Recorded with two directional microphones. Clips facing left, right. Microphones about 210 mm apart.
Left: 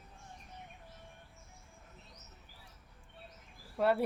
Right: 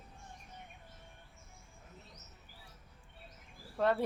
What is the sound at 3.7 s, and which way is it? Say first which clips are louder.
Speech: left 1 dB; 10° left (ahead or behind).